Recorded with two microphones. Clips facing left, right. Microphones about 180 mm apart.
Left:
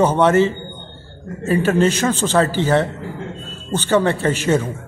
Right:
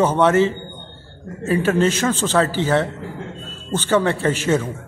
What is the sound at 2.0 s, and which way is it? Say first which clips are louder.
Speech: left 1 dB; 10° left (ahead or behind).